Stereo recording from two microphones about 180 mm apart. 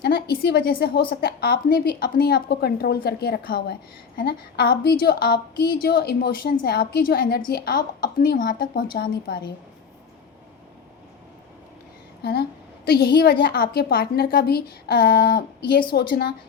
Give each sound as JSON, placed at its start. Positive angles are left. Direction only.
{"t": 0.0, "sound": "a woman's voice", "side_deg": 60}
{"t": 12.2, "sound": "a woman's voice", "side_deg": 60}